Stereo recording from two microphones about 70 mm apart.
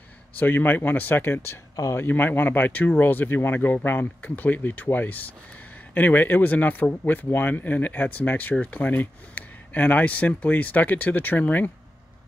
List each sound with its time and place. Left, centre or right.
0.4 s speech: left